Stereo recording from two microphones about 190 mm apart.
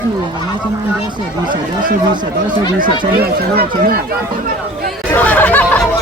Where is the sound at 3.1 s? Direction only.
55° right (ahead or behind).